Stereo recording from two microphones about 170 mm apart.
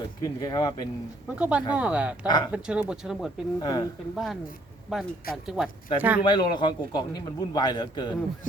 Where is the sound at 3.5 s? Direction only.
25° left (ahead or behind).